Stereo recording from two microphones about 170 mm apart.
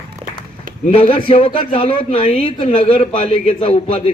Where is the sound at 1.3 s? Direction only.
30° left (ahead or behind).